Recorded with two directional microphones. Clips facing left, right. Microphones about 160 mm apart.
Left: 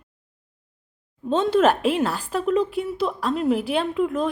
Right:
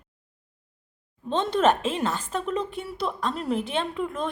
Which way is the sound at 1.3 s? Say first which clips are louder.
Left 4 dB; 5° left (ahead or behind).